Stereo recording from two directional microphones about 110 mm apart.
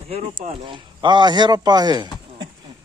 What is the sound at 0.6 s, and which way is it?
A man's voice, 45° right (ahead or behind).